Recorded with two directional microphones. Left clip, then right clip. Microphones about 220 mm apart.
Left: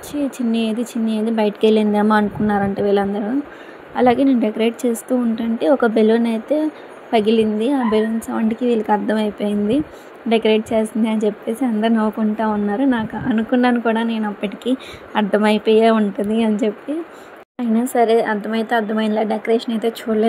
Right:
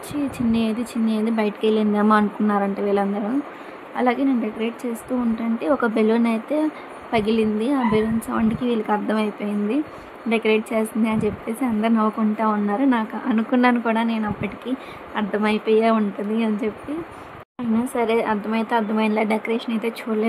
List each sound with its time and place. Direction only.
0.1 s a woman's voice: 10° left (ahead or behind)